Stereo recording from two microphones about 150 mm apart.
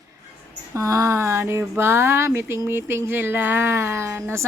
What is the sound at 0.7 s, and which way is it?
Speech, 20° right (ahead or behind).